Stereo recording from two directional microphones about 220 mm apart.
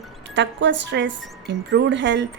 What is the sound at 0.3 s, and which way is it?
Speech, 55° right (ahead or behind).